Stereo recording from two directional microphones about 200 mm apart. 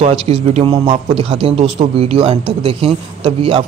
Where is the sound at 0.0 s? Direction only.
30° right (ahead or behind).